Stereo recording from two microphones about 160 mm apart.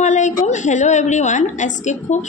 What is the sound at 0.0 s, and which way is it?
A woman's voice, 50° left (ahead or behind).